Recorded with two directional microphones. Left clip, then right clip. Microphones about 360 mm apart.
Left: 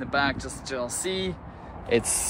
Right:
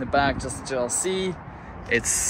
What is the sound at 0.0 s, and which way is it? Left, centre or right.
Speech, centre.